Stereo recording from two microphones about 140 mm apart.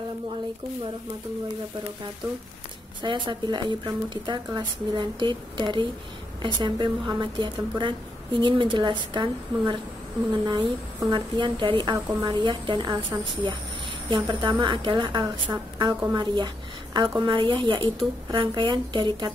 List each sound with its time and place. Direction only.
3.0 s a woman's voice: 35° right (ahead or behind)